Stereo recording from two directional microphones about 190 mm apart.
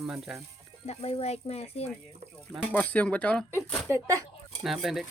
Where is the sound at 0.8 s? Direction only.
30° left (ahead or behind).